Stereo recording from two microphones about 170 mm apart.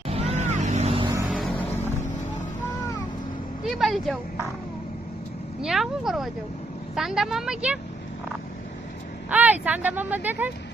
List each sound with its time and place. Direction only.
0.1 s vehicle: 40° right (ahead or behind)
1.3 s vehicle: centre (ahead or behind)
3.7 s a woman's voice: centre (ahead or behind)
5.6 s a woman's voice: centre (ahead or behind)
9.3 s speech: 10° right (ahead or behind)